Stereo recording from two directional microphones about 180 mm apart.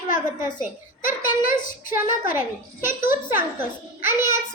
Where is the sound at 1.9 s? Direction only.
10° right (ahead or behind).